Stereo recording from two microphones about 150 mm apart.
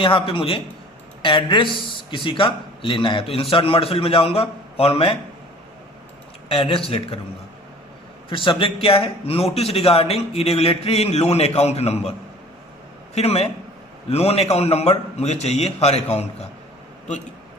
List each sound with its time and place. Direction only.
0.0 s a man's voice: 35° left (ahead or behind)
6.5 s a man's voice: 40° left (ahead or behind)
8.3 s a man's voice: 35° left (ahead or behind)
13.1 s a man's voice: 45° left (ahead or behind)